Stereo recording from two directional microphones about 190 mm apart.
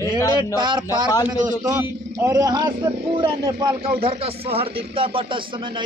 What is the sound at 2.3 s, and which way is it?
Speech, 20° right (ahead or behind).